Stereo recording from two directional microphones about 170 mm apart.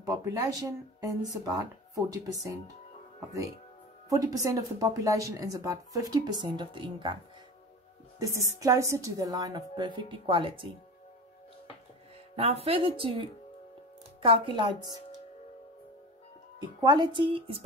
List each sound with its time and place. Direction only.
0.0 s speech: 20° right (ahead or behind)
4.1 s speech: 20° right (ahead or behind)
8.2 s speech: 20° right (ahead or behind)
12.4 s speech: 35° right (ahead or behind)
16.5 s speech: 25° right (ahead or behind)